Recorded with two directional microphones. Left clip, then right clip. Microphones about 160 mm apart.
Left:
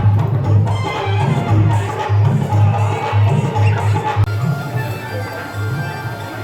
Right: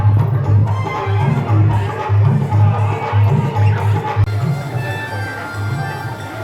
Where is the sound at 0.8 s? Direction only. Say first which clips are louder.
Even; 35° left (ahead or behind).